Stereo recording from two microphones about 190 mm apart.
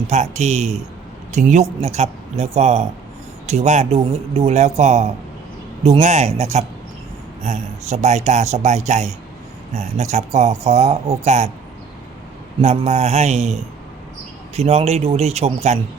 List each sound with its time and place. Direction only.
0.1 s speech: 35° right (ahead or behind)
12.6 s speech: 35° right (ahead or behind)